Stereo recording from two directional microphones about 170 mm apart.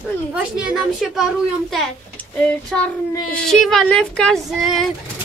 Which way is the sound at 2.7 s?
5° left (ahead or behind).